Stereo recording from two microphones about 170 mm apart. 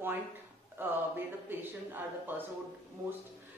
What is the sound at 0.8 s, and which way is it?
Speech, 10° right (ahead or behind).